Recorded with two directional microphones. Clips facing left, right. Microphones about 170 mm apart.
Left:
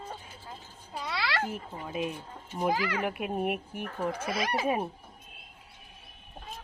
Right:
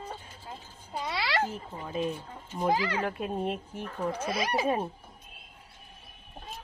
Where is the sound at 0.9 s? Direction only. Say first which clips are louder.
Right 2 dB; 20° right (ahead or behind).